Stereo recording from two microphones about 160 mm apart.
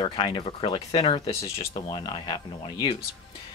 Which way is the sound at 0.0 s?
30° left (ahead or behind).